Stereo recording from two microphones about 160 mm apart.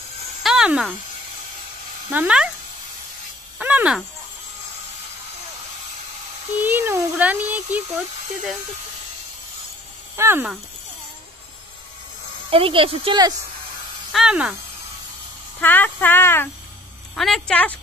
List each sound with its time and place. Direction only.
0.4 s a sound: 5° right (ahead or behind)
2.0 s speech: 10° right (ahead or behind)
3.5 s a sound: 10° right (ahead or behind)
6.6 s a child's voice: 15° right (ahead or behind)
10.1 s speech: 15° right (ahead or behind)
12.4 s speech: 35° right (ahead or behind)
14.1 s a woman's voice: 5° right (ahead or behind)
15.6 s speech: 10° left (ahead or behind)
17.1 s a woman's voice: 5° left (ahead or behind)